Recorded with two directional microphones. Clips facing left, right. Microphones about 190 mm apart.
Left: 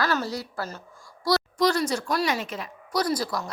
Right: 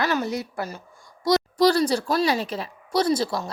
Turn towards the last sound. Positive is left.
turn(degrees=-25)  # may be behind; listen again after turning